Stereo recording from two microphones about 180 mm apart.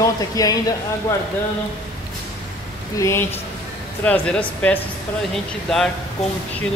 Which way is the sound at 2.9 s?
15° left (ahead or behind).